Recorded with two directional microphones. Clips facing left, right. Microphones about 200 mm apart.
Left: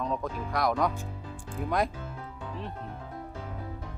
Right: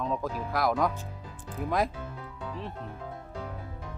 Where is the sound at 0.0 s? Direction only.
Centre (ahead or behind).